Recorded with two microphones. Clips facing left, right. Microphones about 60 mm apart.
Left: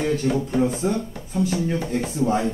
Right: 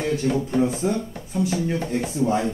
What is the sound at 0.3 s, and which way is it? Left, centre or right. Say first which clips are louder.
Speech: even; centre.